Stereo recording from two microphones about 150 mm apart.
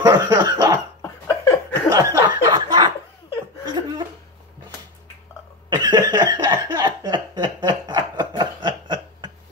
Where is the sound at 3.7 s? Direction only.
30° right (ahead or behind).